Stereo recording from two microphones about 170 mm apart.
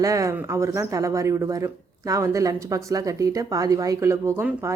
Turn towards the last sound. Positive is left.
turn(degrees=-15)  # may be behind; listen again after turning